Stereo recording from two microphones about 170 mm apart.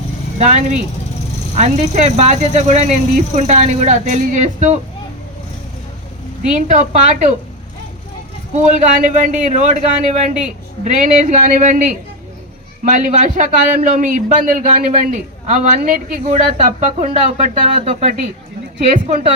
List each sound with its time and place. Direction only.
0.3 s a man's voice: 40° right (ahead or behind)
6.7 s a man's voice: 45° right (ahead or behind)
8.5 s a man's voice: 45° right (ahead or behind)